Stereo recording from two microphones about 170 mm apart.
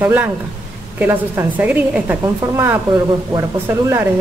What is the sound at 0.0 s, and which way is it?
A woman's voice, 10° right (ahead or behind).